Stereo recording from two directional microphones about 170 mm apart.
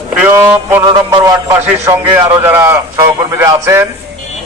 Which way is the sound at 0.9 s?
25° right (ahead or behind).